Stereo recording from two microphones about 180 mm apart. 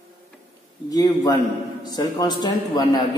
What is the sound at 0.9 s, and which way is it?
A man's voice, 20° left (ahead or behind).